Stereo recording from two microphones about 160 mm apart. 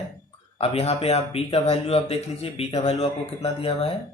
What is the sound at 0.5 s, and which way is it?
Speech, 40° left (ahead or behind).